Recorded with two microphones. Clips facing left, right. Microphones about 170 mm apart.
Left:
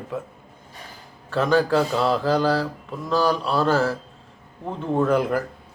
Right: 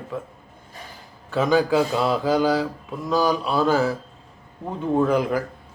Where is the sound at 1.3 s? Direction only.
Centre (ahead or behind).